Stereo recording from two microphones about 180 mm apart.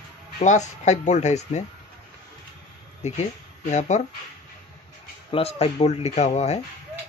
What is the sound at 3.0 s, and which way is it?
Speech, 40° left (ahead or behind).